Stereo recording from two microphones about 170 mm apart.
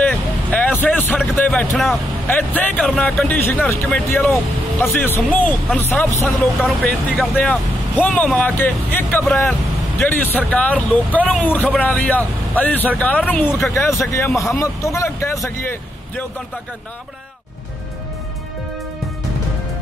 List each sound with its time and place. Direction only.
0.0 s vehicle: 10° left (ahead or behind)
2.2 s speech: 10° left (ahead or behind)